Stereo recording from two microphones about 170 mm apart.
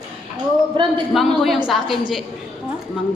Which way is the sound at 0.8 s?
30° right (ahead or behind).